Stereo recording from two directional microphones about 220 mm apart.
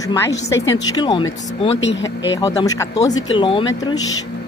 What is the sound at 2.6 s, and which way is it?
Speech, 15° left (ahead or behind).